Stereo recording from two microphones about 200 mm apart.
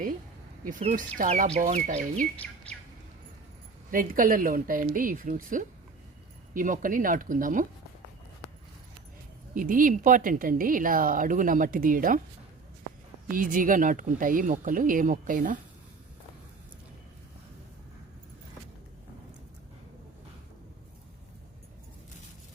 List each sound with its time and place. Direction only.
0.6 s speech: 35° right (ahead or behind)
2.3 s speech: 5° left (ahead or behind)
3.9 s speech: 45° right (ahead or behind)
9.6 s speech: 40° right (ahead or behind)
13.2 s speech: 45° right (ahead or behind)